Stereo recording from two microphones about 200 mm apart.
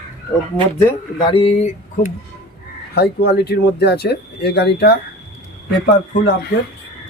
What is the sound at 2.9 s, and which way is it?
Speech, 55° left (ahead or behind).